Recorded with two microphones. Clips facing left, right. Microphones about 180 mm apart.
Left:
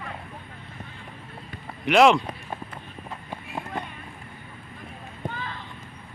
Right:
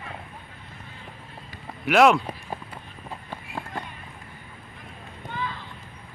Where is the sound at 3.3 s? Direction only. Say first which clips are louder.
Left 2 dB; 15° left (ahead or behind).